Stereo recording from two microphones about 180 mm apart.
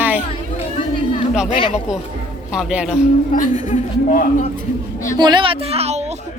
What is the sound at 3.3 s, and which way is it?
A man's voice, 45° left (ahead or behind).